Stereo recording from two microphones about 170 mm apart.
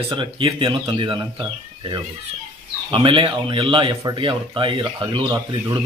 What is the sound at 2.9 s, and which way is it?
Speech, 30° right (ahead or behind).